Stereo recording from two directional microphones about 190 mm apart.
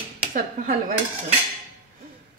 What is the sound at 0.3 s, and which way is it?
Speech, 45° right (ahead or behind).